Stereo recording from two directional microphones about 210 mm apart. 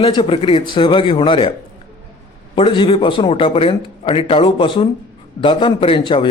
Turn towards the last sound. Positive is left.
turn(degrees=25)  # may be behind; listen again after turning